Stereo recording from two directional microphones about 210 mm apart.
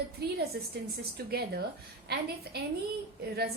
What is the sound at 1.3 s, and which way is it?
Speech, 50° right (ahead or behind).